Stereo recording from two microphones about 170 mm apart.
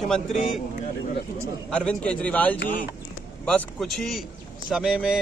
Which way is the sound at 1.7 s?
5° left (ahead or behind).